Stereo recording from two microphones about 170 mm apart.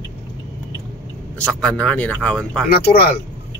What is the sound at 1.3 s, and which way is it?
Speech, 5° left (ahead or behind).